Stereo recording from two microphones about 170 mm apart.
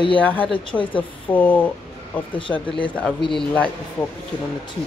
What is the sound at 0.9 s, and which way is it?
A woman's voice, 10° left (ahead or behind).